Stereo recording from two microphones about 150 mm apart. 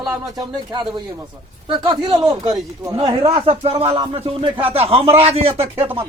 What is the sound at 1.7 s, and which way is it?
Speech, 30° right (ahead or behind).